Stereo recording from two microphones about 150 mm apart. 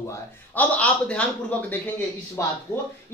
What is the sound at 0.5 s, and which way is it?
Speech, 10° left (ahead or behind).